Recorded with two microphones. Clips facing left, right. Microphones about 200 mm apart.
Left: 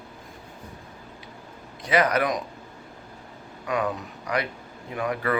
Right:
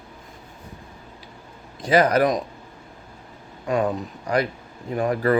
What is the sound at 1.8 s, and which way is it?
Speech, 30° right (ahead or behind).